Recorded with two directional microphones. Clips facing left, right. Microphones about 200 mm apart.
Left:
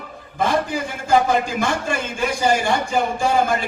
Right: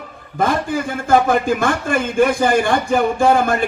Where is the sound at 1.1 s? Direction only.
55° right (ahead or behind).